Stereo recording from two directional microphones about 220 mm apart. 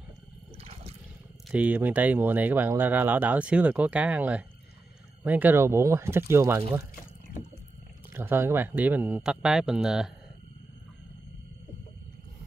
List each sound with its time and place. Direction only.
0.6 s water: 25° right (ahead or behind)
1.5 s speech: 5° right (ahead or behind)
8.1 s speech: 10° right (ahead or behind)